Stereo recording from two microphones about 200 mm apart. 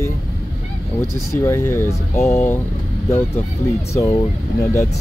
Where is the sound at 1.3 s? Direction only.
15° left (ahead or behind).